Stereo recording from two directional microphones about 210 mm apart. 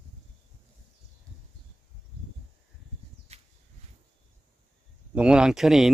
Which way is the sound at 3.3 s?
30° right (ahead or behind).